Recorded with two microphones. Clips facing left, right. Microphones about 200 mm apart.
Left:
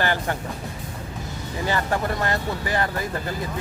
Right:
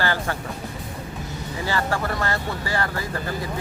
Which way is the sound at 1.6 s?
20° left (ahead or behind).